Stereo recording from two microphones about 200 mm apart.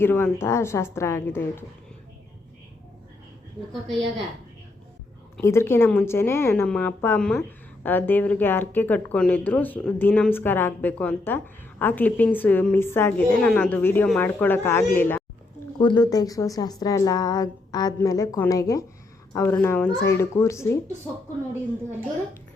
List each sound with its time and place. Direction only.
0.0 s a woman's voice: 10° left (ahead or behind)
5.4 s a woman's voice: 15° left (ahead or behind)
15.8 s a woman's voice: 20° left (ahead or behind)